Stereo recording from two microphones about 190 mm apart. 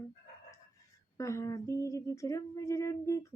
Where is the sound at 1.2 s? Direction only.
15° left (ahead or behind).